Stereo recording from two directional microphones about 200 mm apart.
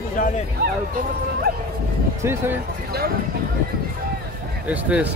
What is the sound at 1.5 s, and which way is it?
Speech, 50° right (ahead or behind).